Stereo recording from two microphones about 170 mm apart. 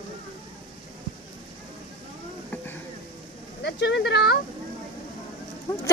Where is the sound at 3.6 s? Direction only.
85° left.